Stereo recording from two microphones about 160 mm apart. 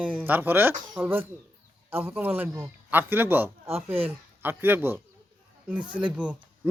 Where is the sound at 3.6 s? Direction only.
40° right (ahead or behind).